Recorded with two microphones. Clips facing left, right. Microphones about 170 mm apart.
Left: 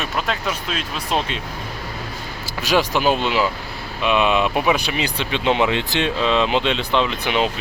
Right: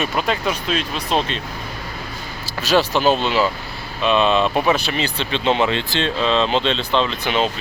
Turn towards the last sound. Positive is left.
turn(degrees=15)  # may be behind; listen again after turning